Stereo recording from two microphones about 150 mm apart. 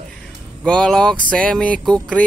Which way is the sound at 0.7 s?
5° left (ahead or behind).